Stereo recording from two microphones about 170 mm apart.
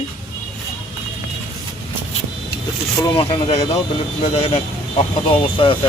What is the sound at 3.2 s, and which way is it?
Speech, 35° left (ahead or behind).